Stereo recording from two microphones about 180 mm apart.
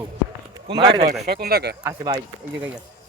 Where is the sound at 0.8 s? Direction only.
35° right (ahead or behind).